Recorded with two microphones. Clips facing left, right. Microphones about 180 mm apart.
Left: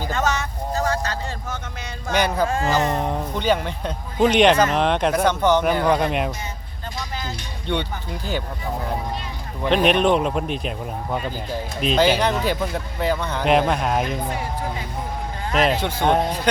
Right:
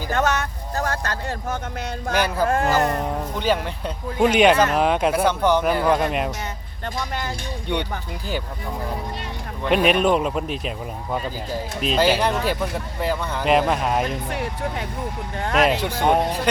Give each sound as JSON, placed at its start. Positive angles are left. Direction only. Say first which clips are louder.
{"t": 0.1, "sound": "vehicle", "louder": "right 4 dB", "side_deg": -60}
{"t": 2.1, "sound": "speech", "louder": "even", "side_deg": -5}
{"t": 9.6, "sound": "speech", "louder": "left 1 dB", "side_deg": -5}
{"t": 11.8, "sound": "speech", "louder": "left 1 dB", "side_deg": 0}
{"t": 14.3, "sound": "speech", "louder": "even", "side_deg": -70}
{"t": 15.6, "sound": "speech", "louder": "even", "side_deg": -10}